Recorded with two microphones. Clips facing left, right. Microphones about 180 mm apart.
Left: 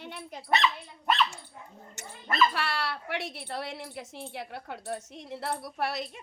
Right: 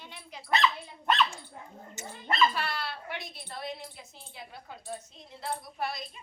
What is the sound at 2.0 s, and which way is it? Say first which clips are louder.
Dog: right 3 dB; 70° left (ahead or behind).